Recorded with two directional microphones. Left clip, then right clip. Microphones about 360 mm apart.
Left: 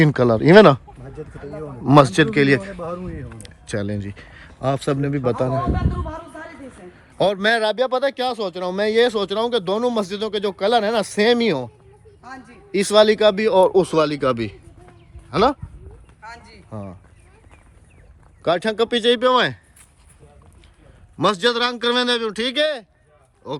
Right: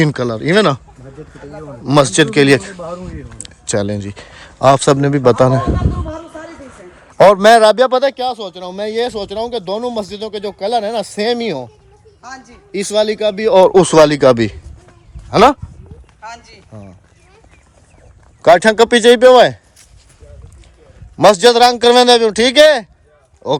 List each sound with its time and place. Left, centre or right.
0.0 s a man's voice: centre
7.2 s a man's voice: centre
8.1 s speech: centre
12.2 s a man's voice: centre
12.7 s speech: centre
13.5 s a man's voice: right
16.2 s a sound: centre
18.4 s a man's voice: centre
21.2 s a man's voice: centre